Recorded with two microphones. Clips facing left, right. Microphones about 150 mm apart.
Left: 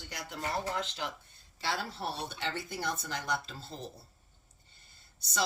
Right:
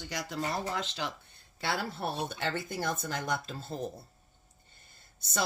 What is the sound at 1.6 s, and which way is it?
Speech, 55° right (ahead or behind).